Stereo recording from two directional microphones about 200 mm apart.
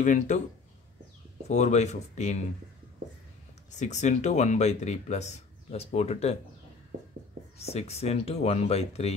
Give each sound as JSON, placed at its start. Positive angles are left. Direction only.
{"t": 0.0, "sound": "speech", "side_deg": 40}
{"t": 1.5, "sound": "speech", "side_deg": 35}
{"t": 3.7, "sound": "speech", "side_deg": 35}
{"t": 7.5, "sound": "speech", "side_deg": 30}